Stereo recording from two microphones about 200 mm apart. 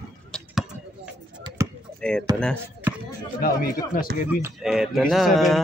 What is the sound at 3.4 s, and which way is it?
Speech, 45° left (ahead or behind).